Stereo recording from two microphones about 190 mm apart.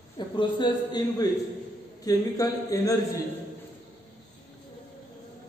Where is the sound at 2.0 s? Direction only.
20° left (ahead or behind).